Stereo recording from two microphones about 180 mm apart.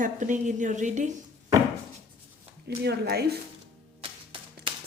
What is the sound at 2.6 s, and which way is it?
Speech, 65° right (ahead or behind).